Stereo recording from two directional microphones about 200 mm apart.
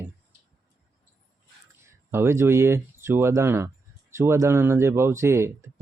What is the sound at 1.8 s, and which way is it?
Speech, 15° right (ahead or behind).